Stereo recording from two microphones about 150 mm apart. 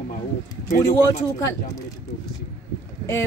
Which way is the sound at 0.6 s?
55° left (ahead or behind).